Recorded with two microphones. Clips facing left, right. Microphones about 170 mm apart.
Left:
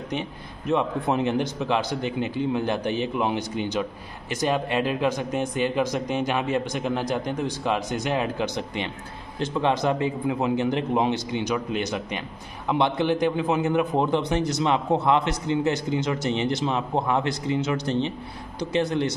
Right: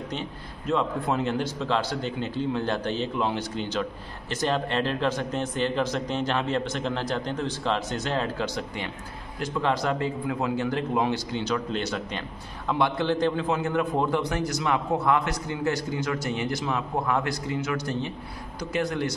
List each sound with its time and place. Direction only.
0.1 s a man's voice: 15° left (ahead or behind)